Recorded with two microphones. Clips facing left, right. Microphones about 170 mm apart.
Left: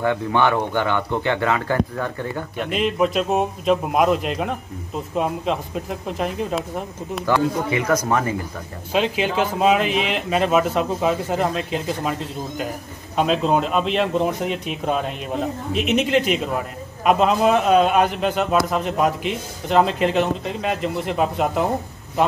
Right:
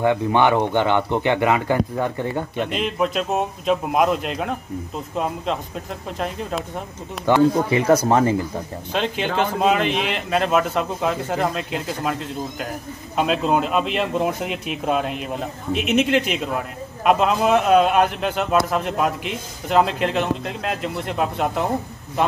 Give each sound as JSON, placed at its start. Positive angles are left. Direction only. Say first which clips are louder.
{"t": 0.0, "sound": "speech", "louder": "right 2 dB", "side_deg": -20}
{"t": 2.5, "sound": "a man's voice", "louder": "left 1 dB", "side_deg": 0}
{"t": 7.3, "sound": "speech", "louder": "right 4 dB", "side_deg": -20}
{"t": 8.9, "sound": "a man's voice", "louder": "left 2 dB", "side_deg": 5}